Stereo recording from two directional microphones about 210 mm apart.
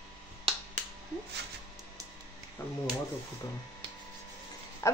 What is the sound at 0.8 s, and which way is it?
Finger snapping, 35° right (ahead or behind).